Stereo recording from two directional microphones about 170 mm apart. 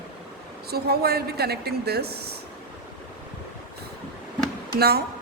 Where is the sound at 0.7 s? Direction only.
65° right (ahead or behind).